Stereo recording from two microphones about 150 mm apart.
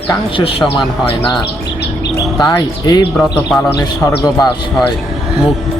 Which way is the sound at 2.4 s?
30° left (ahead or behind).